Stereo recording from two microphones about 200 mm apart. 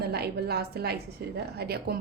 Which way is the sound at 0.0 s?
55° right (ahead or behind).